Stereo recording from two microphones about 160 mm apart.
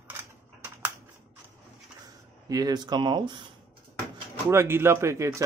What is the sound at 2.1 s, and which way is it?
Speech, 20° right (ahead or behind).